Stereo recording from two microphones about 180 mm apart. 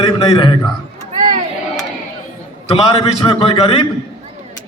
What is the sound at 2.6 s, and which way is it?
A man's voice, 30° left (ahead or behind).